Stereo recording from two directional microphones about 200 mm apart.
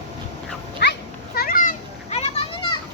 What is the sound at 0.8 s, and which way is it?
Cat, 60° left (ahead or behind).